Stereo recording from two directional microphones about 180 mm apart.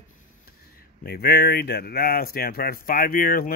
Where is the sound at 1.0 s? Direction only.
60° left (ahead or behind).